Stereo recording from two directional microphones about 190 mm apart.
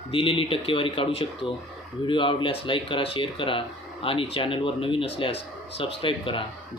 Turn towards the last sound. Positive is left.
turn(degrees=25)  # may be behind; listen again after turning